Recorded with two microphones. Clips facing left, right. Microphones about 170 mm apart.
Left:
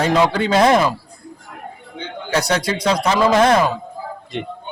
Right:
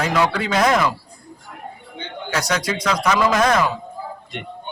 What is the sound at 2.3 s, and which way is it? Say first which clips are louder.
A man's voice: left 4 dB; 30° left (ahead or behind).